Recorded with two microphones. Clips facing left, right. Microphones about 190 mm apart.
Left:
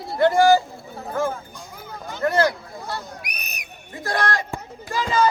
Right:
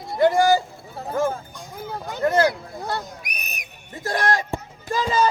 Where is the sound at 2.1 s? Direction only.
15° right (ahead or behind).